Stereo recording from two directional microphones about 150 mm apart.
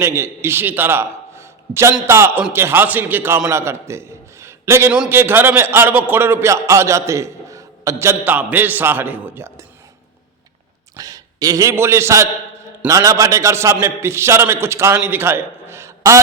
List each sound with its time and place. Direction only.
0.0 s a man's voice: 15° right (ahead or behind)
10.9 s a man's voice: 25° right (ahead or behind)